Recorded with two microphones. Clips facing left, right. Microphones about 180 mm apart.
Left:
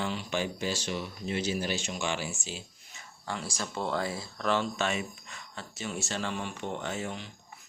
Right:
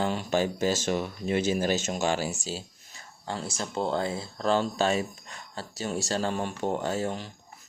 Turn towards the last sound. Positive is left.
turn(degrees=-40)  # may be behind; listen again after turning